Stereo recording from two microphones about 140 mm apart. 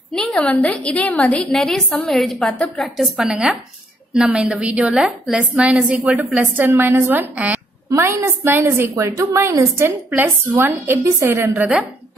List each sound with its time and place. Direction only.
0.1 s a woman's voice: 5° left (ahead or behind)
3.0 s a woman's voice: 5° right (ahead or behind)